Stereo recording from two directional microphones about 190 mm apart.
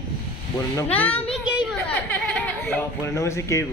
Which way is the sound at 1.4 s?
5° right (ahead or behind).